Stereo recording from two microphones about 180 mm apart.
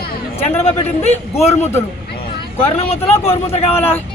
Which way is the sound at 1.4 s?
15° left (ahead or behind).